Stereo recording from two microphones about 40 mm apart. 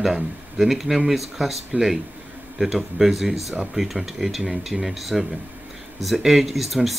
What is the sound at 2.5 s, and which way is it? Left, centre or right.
Speech, centre.